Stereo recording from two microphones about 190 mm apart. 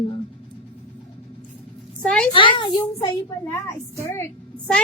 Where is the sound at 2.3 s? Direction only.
25° left (ahead or behind).